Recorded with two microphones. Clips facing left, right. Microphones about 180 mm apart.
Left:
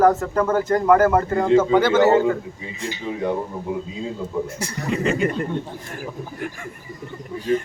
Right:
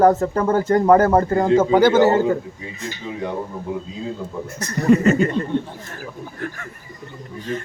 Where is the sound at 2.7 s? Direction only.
10° left (ahead or behind).